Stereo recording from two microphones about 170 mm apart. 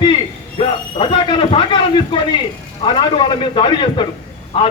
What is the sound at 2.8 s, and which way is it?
A man's voice, 30° left (ahead or behind).